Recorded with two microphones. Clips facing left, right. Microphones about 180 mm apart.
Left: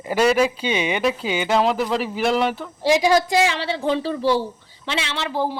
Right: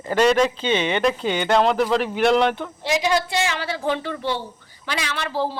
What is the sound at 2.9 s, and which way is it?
A woman's voice, 30° left (ahead or behind).